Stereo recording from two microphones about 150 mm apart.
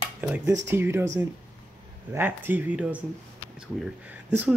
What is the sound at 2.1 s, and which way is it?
Speech, 15° right (ahead or behind).